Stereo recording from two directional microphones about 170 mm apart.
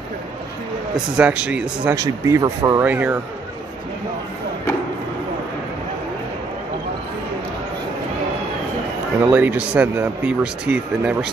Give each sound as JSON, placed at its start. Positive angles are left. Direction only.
{"t": 1.1, "sound": "speech", "side_deg": -5}
{"t": 2.0, "sound": "speech", "side_deg": -20}
{"t": 9.2, "sound": "speech", "side_deg": -10}